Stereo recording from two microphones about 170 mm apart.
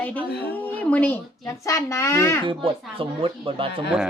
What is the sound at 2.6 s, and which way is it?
Speech, 30° right (ahead or behind).